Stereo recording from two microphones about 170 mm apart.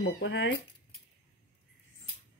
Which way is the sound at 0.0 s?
90° left.